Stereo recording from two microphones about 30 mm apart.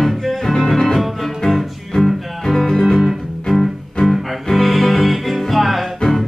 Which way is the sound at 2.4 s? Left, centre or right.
Centre.